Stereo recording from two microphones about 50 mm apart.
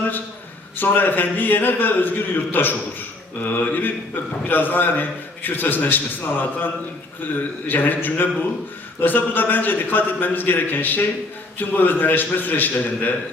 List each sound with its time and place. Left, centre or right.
0.8 s a man's voice: left
7.7 s a man's voice: left